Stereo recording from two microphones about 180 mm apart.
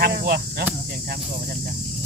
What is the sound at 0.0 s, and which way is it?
Cricket, 60° right (ahead or behind).